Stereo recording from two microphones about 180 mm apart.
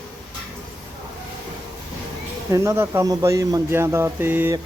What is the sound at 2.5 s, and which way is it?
Speech, 15° right (ahead or behind).